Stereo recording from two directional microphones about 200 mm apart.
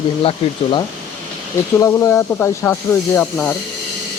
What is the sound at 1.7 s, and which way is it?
Speech, 15° left (ahead or behind).